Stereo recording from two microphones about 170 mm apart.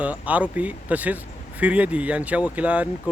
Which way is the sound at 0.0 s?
10° right (ahead or behind).